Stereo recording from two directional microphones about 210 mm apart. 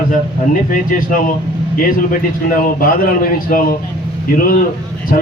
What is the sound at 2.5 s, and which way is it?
A man's voice, 40° left (ahead or behind).